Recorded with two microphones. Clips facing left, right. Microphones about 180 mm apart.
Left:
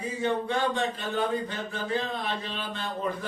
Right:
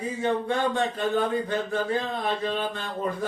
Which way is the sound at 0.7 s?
55° right (ahead or behind).